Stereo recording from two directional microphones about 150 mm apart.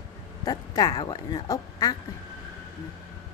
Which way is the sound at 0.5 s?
25° left (ahead or behind).